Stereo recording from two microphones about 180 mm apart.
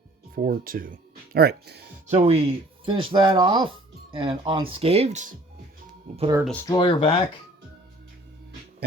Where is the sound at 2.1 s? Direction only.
35° right (ahead or behind).